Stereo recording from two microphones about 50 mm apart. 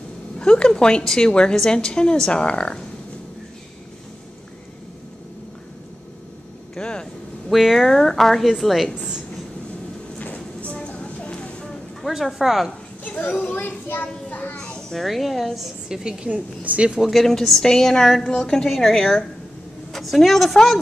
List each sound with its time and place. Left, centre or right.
0.4 s a woman's voice: centre
6.7 s vehicle: centre
7.5 s a woman's voice: centre
10.1 s a sound: left
12.0 s a woman's voice: centre
13.3 s a child's voice: left
13.6 s a child's voice: left
14.0 s a sound: left
14.6 s a sound: centre
15.0 s a woman's voice: centre
16.3 s a woman's voice: right
17.0 s a woman's voice: centre